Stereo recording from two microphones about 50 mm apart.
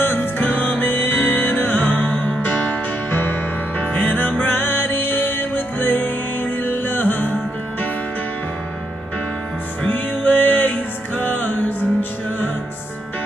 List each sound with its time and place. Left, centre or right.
0.0 s music: left
9.8 s music: left